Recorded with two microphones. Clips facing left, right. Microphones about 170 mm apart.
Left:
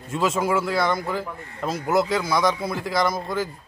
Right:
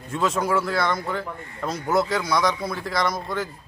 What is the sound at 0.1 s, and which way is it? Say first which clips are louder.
A man's voice: left 1 dB; centre (ahead or behind).